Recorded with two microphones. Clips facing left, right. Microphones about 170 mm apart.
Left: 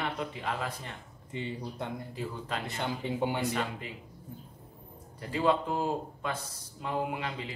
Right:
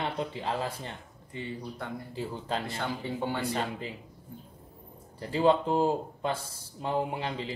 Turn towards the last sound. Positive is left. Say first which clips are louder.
# right 2 dB
turn(degrees=-30)  # may be behind; listen again after turning